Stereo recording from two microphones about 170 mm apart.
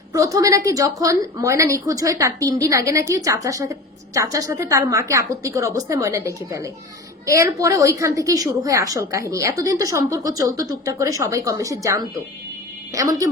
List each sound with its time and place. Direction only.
0.1 s a woman's voice: 20° right (ahead or behind)